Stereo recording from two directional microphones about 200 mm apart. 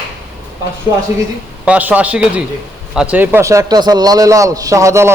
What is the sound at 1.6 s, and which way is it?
A man's voice, 5° right (ahead or behind).